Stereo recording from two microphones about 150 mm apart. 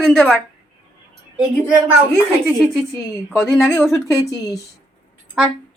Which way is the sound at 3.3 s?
15° left (ahead or behind).